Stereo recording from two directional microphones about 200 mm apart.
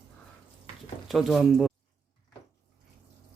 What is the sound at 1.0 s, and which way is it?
Speech, centre (ahead or behind).